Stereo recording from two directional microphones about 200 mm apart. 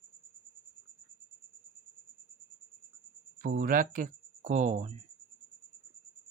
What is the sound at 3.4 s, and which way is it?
Speech, 45° right (ahead or behind).